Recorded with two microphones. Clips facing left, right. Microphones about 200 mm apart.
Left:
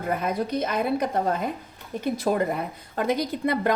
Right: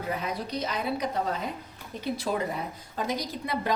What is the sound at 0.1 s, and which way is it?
A woman's voice, 50° left (ahead or behind).